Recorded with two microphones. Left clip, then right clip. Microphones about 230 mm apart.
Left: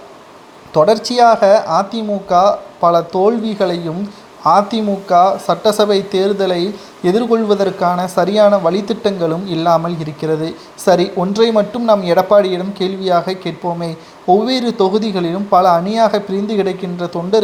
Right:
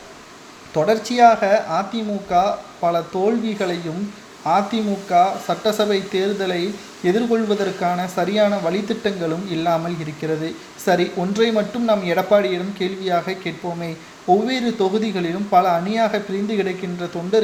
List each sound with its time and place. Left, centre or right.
0.7 s speech: left